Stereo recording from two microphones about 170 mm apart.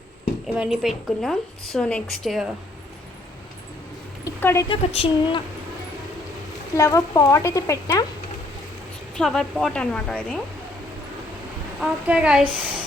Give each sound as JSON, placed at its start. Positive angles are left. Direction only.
{"t": 0.4, "sound": "a woman's voice", "side_deg": -5}
{"t": 4.2, "sound": "a sound", "side_deg": 15}
{"t": 4.7, "sound": "a woman's voice", "side_deg": 35}
{"t": 6.7, "sound": "speech", "side_deg": 20}
{"t": 9.1, "sound": "a woman's voice", "side_deg": 5}
{"t": 11.8, "sound": "a woman's voice", "side_deg": -5}